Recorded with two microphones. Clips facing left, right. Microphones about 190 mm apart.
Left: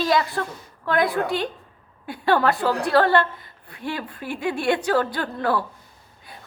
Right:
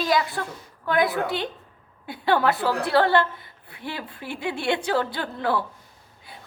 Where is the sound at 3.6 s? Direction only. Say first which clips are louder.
Left 4 dB; 10° right (ahead or behind).